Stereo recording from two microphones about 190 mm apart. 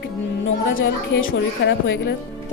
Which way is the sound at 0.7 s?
80° left.